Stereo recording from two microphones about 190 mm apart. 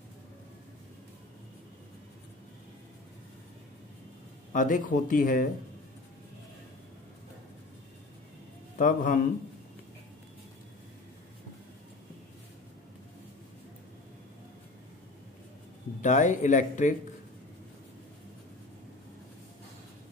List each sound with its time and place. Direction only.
4.5 s speech: 45° left (ahead or behind)
8.7 s speech: 45° left (ahead or behind)
16.0 s speech: 40° left (ahead or behind)